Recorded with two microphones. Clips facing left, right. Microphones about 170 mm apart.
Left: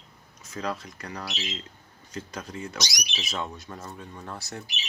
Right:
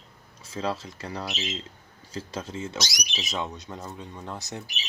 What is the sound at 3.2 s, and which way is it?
Speech, 20° right (ahead or behind).